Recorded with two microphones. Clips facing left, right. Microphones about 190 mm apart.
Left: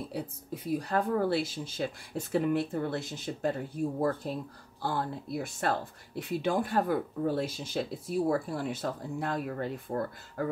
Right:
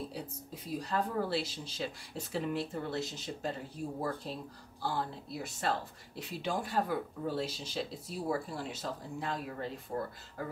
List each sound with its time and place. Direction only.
0.1 s speech: 55° left (ahead or behind)